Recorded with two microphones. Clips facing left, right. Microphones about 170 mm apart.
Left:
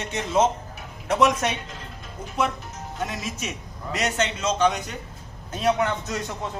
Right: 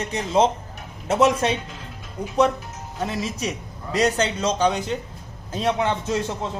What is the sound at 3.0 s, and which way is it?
A man's voice, 30° right (ahead or behind).